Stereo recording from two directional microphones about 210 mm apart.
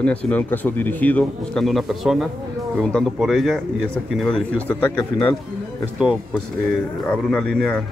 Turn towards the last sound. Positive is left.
turn(degrees=5)  # may be behind; listen again after turning